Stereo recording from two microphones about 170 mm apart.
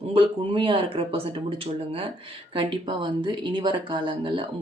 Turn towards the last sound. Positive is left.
turn(degrees=-30)  # may be behind; listen again after turning